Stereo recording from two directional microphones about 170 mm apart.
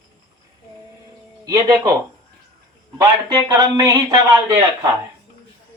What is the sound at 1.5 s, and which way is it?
Speech, 20° right (ahead or behind).